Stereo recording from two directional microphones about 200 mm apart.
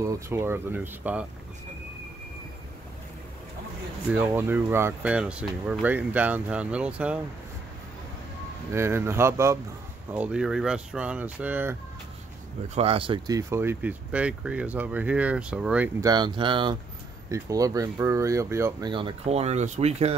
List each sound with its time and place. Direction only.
0.0 s speech: 15° right (ahead or behind)
4.1 s speech: 10° right (ahead or behind)
8.7 s speech: 15° right (ahead or behind)
12.6 s speech: 30° right (ahead or behind); by 15.9 s 5° right (ahead or behind)
16.0 s speech: 20° right (ahead or behind)